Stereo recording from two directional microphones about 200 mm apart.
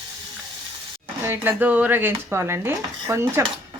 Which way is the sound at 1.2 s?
10° right (ahead or behind).